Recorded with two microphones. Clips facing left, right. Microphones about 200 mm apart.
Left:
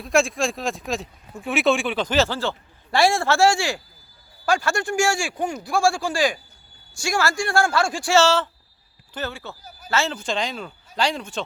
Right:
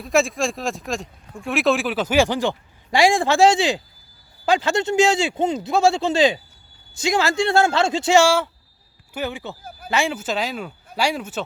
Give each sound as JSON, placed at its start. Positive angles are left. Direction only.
{"t": 0.0, "sound": "a man's voice", "side_deg": 0}